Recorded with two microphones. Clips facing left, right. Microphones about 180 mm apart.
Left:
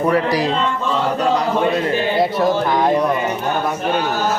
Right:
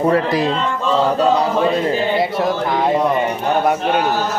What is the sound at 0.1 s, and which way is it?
Speech, 25° right (ahead or behind).